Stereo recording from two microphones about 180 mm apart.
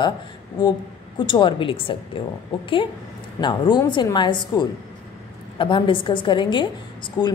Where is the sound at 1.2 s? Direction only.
25° left (ahead or behind).